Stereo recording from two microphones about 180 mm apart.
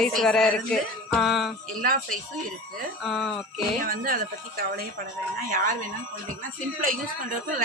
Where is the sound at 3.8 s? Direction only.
55° right (ahead or behind).